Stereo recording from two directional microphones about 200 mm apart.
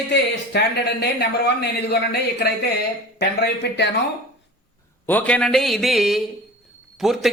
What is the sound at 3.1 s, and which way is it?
Speech, 55° left (ahead or behind).